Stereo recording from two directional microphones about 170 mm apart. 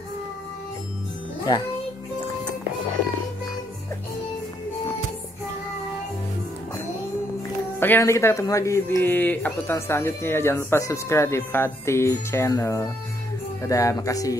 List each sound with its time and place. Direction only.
7.8 s speech: 15° left (ahead or behind)